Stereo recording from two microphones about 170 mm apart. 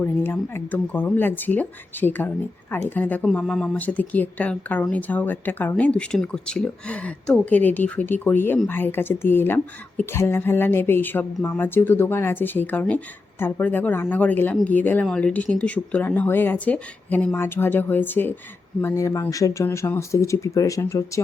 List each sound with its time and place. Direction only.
0.0 s speech: 15° left (ahead or behind)